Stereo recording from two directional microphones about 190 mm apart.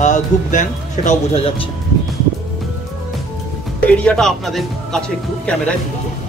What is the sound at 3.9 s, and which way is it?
Speech, 5° left (ahead or behind).